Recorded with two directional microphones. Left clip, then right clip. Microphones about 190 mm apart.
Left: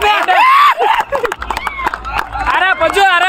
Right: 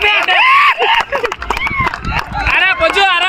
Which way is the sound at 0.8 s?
50° left (ahead or behind).